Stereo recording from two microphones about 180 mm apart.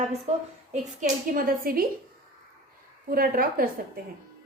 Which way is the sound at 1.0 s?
50° right (ahead or behind).